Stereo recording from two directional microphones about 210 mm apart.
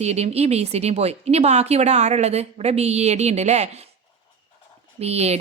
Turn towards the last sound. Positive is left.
turn(degrees=-30)  # may be behind; listen again after turning